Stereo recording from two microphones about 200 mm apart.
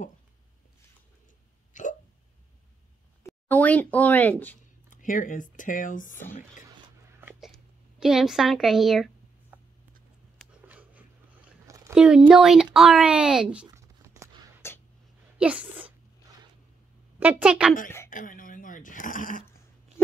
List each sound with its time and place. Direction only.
1.7 s hiccup: 40° left (ahead or behind)
3.3 s speech: 10° left (ahead or behind)
4.8 s speech: 40° left (ahead or behind)
7.2 s a sound: 5° right (ahead or behind)
11.9 s a child's voice: 5° right (ahead or behind)
13.7 s tearing: 15° right (ahead or behind)
14.6 s a sound: 10° left (ahead or behind)
15.3 s speech: 5° right (ahead or behind)
17.2 s a child's voice: 5° right (ahead or behind)
18.1 s a sound: 40° left (ahead or behind)